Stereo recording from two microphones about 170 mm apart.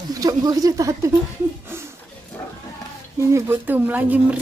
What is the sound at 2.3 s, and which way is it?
Roaring cats, 10° left (ahead or behind).